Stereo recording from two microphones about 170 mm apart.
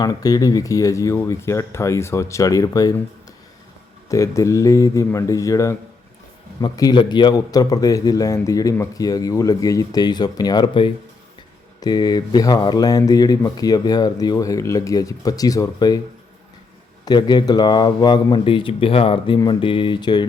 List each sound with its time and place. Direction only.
0.0 s a man's voice: 20° left (ahead or behind)
4.1 s a man's voice: 20° left (ahead or behind)
17.1 s a man's voice: 25° left (ahead or behind)